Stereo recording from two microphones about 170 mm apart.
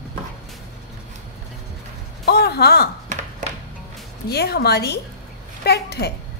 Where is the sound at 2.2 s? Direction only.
70° left (ahead or behind).